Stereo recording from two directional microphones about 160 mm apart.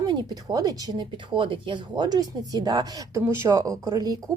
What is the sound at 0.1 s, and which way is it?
Speech, 25° right (ahead or behind).